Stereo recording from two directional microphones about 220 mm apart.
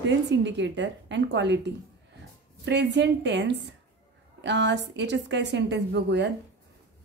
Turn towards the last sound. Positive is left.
turn(degrees=-50)  # may be behind; listen again after turning